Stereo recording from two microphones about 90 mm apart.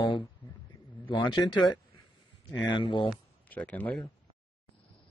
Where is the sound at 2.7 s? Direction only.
70° left (ahead or behind).